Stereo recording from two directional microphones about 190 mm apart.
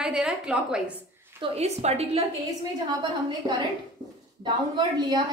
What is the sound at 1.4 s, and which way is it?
Speech, 35° right (ahead or behind).